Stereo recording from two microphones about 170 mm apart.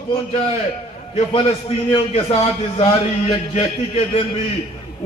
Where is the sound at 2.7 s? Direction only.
35° left (ahead or behind).